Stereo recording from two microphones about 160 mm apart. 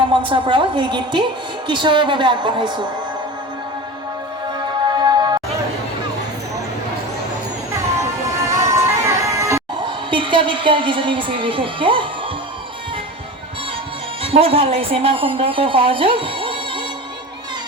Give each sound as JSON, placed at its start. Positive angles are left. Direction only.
{"t": 0.3, "sound": "a woman's voice", "side_deg": -30}
{"t": 4.9, "sound": "music", "side_deg": -25}
{"t": 8.4, "sound": "music", "side_deg": -20}
{"t": 10.1, "sound": "a woman's voice", "side_deg": -30}
{"t": 14.2, "sound": "a woman's voice", "side_deg": -35}